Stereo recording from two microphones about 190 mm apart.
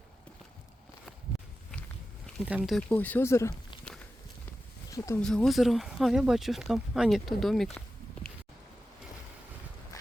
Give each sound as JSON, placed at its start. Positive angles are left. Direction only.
{"t": 2.5, "sound": "speech", "side_deg": -5}
{"t": 2.9, "sound": "speech", "side_deg": 10}
{"t": 4.9, "sound": "speech", "side_deg": 15}
{"t": 5.2, "sound": "speech", "side_deg": 5}
{"t": 9.9, "sound": "a sound", "side_deg": 20}